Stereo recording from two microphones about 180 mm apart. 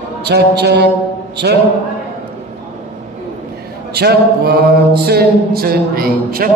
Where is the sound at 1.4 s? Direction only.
65° right (ahead or behind).